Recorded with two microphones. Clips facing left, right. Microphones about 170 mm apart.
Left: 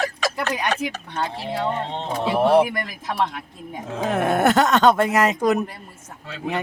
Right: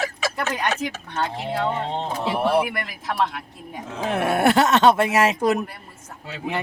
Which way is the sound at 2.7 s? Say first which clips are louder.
Left 1 dB; 15° left (ahead or behind).